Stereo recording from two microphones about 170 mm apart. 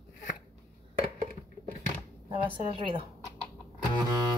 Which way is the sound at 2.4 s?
30° right (ahead or behind).